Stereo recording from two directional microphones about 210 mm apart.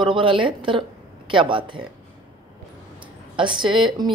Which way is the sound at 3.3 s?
25° right (ahead or behind).